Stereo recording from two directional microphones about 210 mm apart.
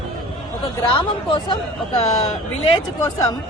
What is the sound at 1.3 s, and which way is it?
Speech, 20° left (ahead or behind).